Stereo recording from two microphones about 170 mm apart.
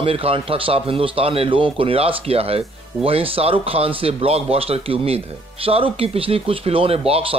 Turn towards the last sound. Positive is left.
turn(degrees=-35)  # may be behind; listen again after turning